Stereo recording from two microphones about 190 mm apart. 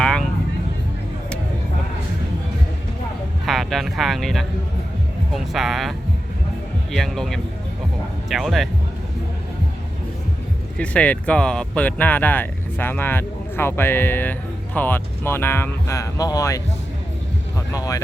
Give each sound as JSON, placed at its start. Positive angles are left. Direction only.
{"t": 0.0, "sound": "music", "side_deg": 5}
{"t": 3.4, "sound": "speech", "side_deg": 0}
{"t": 6.9, "sound": "speech", "side_deg": 0}
{"t": 10.8, "sound": "speech", "side_deg": 5}
{"t": 17.7, "sound": "speech", "side_deg": 15}